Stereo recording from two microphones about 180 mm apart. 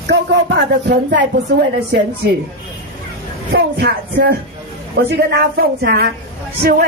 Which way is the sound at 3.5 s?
60° right (ahead or behind).